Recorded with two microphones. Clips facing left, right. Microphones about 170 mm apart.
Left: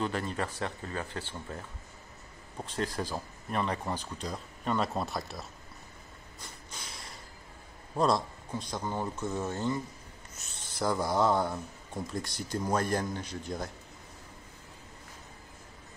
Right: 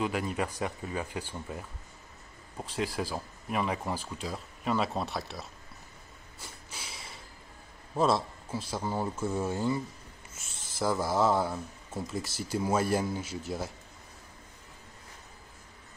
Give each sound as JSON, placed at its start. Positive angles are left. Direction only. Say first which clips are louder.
{"t": 0.0, "sound": "speech", "louder": "right 2 dB", "side_deg": -10}
{"t": 6.4, "sound": "a sound", "louder": "right 1 dB", "side_deg": -5}
{"t": 7.9, "sound": "speech", "louder": "right 1 dB", "side_deg": 0}